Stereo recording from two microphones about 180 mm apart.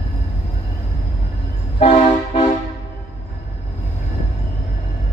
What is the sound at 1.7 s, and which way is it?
Train, 35° left (ahead or behind).